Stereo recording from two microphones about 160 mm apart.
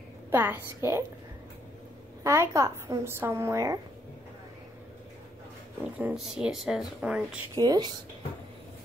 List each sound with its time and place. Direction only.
0.3 s a woman's voice: 15° right (ahead or behind)
2.2 s a woman's voice: 20° right (ahead or behind)
5.9 s speech: 10° right (ahead or behind)
7.5 s a woman's voice: 25° right (ahead or behind)